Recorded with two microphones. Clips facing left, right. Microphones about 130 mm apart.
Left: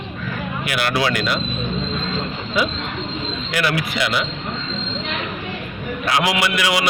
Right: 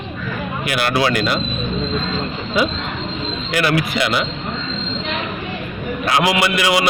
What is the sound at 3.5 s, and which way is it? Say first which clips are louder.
Speech: right 4 dB; 50° right (ahead or behind).